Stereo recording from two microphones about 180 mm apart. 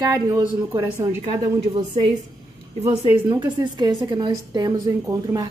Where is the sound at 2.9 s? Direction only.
25° right (ahead or behind).